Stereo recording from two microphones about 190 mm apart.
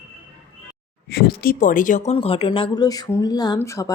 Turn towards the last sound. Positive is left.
turn(degrees=20)  # may be behind; listen again after turning